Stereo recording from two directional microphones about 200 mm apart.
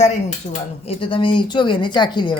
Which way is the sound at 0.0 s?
35° left (ahead or behind).